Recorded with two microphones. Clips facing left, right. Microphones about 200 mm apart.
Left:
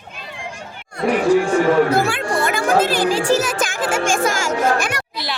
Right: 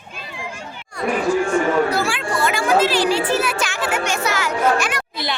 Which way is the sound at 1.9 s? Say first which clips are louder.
Left 3 dB; 55° left (ahead or behind).